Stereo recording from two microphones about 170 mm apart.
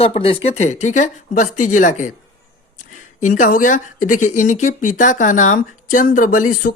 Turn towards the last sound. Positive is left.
turn(degrees=55)  # may be behind; listen again after turning